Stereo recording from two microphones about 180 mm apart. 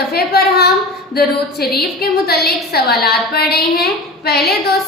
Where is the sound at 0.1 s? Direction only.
60° left (ahead or behind).